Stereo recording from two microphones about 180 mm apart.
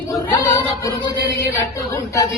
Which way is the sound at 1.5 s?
15° left (ahead or behind).